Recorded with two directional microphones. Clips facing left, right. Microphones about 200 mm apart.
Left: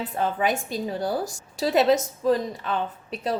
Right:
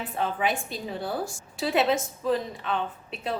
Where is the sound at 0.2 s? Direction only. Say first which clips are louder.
Left 3 dB; 40° left (ahead or behind).